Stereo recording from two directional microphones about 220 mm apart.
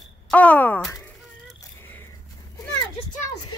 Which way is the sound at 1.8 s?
10° left (ahead or behind).